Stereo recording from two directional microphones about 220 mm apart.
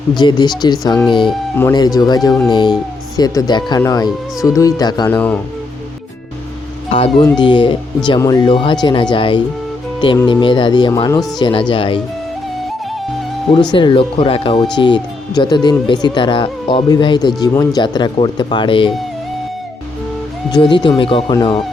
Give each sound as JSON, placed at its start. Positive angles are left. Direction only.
{"t": 0.1, "sound": "speech", "side_deg": 20}
{"t": 5.0, "sound": "speech", "side_deg": 5}
{"t": 6.9, "sound": "speech", "side_deg": 25}
{"t": 13.5, "sound": "speech", "side_deg": 20}
{"t": 20.5, "sound": "speech", "side_deg": 20}